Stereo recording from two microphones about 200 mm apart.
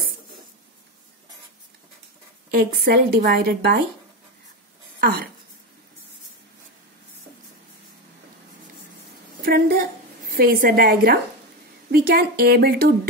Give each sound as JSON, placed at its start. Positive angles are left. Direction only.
{"t": 2.5, "sound": "a woman's voice", "side_deg": -50}
{"t": 5.0, "sound": "a woman's voice", "side_deg": -50}
{"t": 9.4, "sound": "a woman's voice", "side_deg": -50}